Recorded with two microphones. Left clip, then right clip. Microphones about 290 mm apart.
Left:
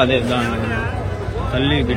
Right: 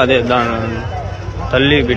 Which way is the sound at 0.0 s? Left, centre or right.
Centre.